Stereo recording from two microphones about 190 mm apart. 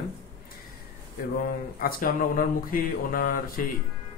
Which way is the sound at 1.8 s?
50° left (ahead or behind).